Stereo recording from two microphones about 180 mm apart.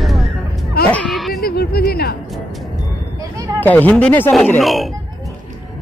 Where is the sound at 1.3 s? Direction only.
60° left (ahead or behind).